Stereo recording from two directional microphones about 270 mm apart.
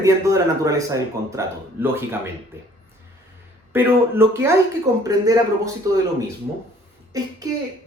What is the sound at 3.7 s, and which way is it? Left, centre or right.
Speech, centre.